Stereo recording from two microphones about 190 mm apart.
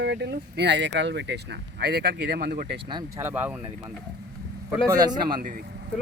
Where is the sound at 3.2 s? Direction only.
10° right (ahead or behind).